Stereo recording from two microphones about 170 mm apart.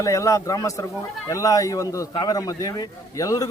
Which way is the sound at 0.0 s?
20° left (ahead or behind).